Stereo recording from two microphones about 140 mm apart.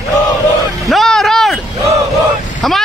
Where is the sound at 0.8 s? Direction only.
Centre (ahead or behind).